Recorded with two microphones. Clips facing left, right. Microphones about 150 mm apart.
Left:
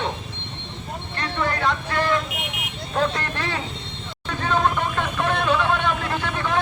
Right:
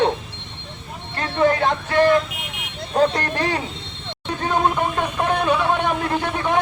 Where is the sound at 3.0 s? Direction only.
40° right (ahead or behind).